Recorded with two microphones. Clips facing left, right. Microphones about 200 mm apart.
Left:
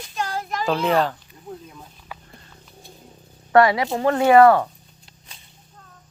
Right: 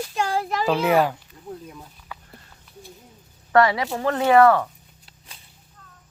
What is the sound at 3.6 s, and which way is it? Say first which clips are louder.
Speech: left 2 dB; 15° left (ahead or behind).